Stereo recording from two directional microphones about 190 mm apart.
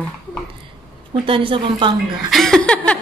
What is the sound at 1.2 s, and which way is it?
Speech, 30° right (ahead or behind).